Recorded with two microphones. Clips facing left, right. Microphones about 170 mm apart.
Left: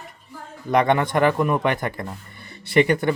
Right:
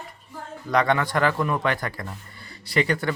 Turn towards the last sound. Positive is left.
turn(degrees=20)  # may be behind; listen again after turning